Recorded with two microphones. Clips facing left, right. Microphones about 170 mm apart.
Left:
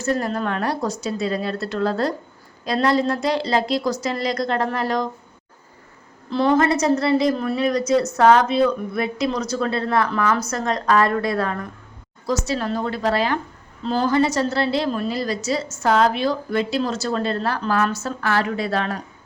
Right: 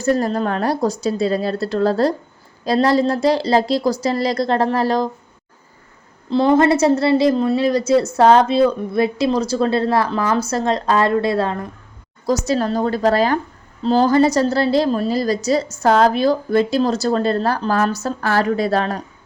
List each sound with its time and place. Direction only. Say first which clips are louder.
0.0 s a woman's voice: right 5 dB; 35° right (ahead or behind)
6.3 s a woman's voice: right 4 dB; 25° right (ahead or behind)
12.5 s a woman's voice: right 5 dB; 40° right (ahead or behind)